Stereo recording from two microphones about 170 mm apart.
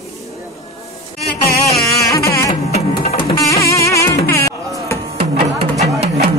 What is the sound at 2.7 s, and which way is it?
Music, 35° left (ahead or behind).